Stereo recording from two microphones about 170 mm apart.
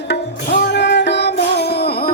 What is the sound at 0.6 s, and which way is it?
Music, 90° left.